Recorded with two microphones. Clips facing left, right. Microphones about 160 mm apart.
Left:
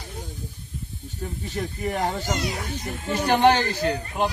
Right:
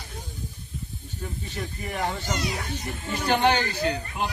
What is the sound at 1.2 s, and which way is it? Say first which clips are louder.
Speech: left 4 dB; 40° left (ahead or behind).